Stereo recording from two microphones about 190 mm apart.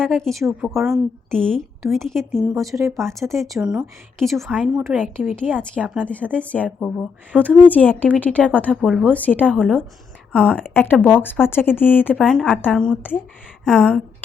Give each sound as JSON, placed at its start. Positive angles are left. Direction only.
{"t": 0.0, "sound": "a woman's voice", "side_deg": 5}
{"t": 2.6, "sound": "speech", "side_deg": -15}
{"t": 3.1, "sound": "a woman's voice", "side_deg": 0}
{"t": 5.7, "sound": "a woman's voice", "side_deg": 5}
{"t": 7.7, "sound": "a woman's voice", "side_deg": 10}
{"t": 9.1, "sound": "speech", "side_deg": 10}
{"t": 10.3, "sound": "a woman's voice", "side_deg": -5}
{"t": 10.6, "sound": "a woman's voice", "side_deg": 10}